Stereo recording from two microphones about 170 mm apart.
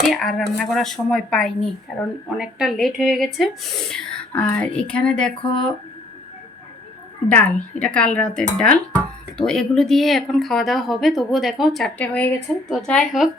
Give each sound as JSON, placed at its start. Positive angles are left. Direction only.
{"t": 0.1, "sound": "speech", "side_deg": 0}
{"t": 7.3, "sound": "a woman's voice", "side_deg": 5}